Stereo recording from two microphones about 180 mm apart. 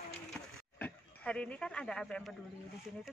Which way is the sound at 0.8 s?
5° left (ahead or behind).